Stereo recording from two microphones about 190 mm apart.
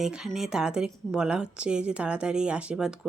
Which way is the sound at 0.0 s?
5° right (ahead or behind).